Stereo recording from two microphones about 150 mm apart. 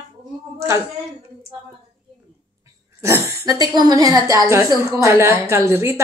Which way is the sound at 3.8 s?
25° right (ahead or behind).